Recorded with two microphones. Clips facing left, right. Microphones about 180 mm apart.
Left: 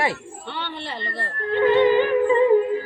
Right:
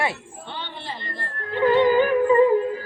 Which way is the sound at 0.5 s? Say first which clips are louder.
Left 3 dB; 75° left (ahead or behind).